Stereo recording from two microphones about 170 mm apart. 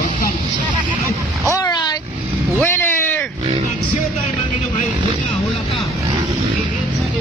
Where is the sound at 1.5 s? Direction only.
25° left (ahead or behind).